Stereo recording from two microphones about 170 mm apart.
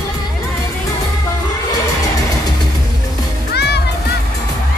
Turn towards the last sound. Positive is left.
turn(degrees=80)